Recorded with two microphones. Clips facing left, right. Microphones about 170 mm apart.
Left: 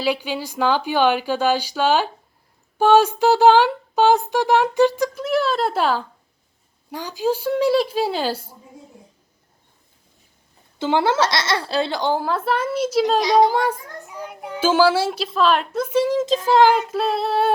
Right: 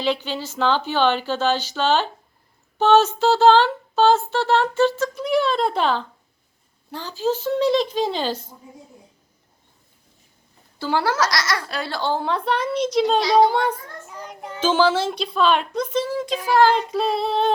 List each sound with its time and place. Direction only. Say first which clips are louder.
0.0 s a child's voice: left 1 dB; 10° left (ahead or behind)
5.1 s a child's voice: even; centre (ahead or behind)
10.8 s speech: left 3 dB; 20° left (ahead or behind)
12.2 s a child's voice: left 1 dB; 5° left (ahead or behind)
16.1 s speech: left 1 dB; 20° left (ahead or behind)
16.6 s a child's voice: left 1 dB; 5° left (ahead or behind)